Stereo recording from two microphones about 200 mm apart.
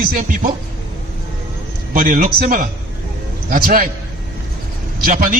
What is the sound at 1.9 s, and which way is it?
A man's voice, 45° right (ahead or behind).